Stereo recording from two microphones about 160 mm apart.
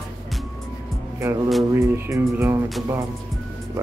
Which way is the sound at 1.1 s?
20° right (ahead or behind).